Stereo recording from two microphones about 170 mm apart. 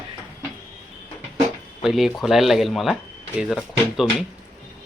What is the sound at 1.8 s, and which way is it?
Speech, centre (ahead or behind).